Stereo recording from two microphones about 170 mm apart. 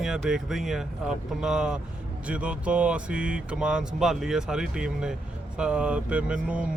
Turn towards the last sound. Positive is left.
turn(degrees=-5)  # may be behind; listen again after turning